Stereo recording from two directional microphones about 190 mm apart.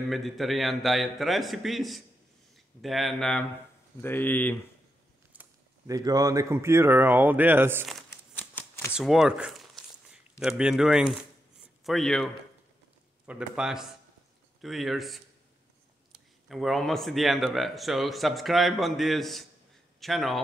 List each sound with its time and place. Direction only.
0.1 s a man's voice: centre (ahead or behind)
5.3 s speech: 15° right (ahead or behind)
8.4 s typewriter: 10° left (ahead or behind)
8.9 s a man's voice: centre (ahead or behind)
13.3 s a man's voice: 5° right (ahead or behind)
16.4 s a man's voice: centre (ahead or behind)